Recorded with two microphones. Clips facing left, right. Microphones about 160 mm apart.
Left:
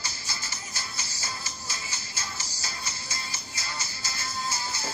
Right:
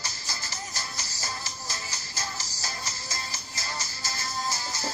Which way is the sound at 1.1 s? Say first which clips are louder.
Right 1 dB; 40° right (ahead or behind).